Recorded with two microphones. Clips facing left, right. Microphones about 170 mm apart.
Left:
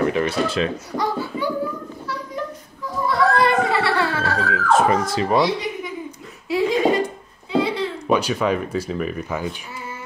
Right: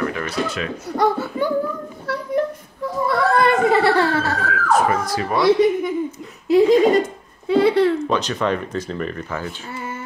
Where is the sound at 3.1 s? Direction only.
50° right (ahead or behind).